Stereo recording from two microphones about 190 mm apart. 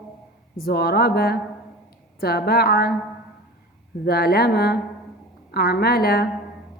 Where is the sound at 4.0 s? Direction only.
55° left (ahead or behind).